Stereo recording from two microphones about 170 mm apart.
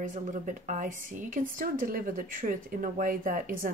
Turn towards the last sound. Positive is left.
turn(degrees=-50)  # may be behind; listen again after turning